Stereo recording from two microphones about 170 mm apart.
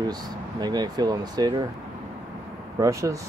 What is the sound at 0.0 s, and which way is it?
Speech, 25° right (ahead or behind).